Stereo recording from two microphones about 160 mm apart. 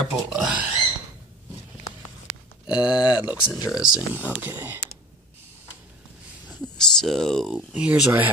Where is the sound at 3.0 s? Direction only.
25° left (ahead or behind).